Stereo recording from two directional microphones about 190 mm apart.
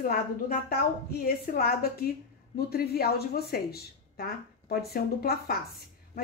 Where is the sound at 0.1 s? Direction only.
50° left (ahead or behind).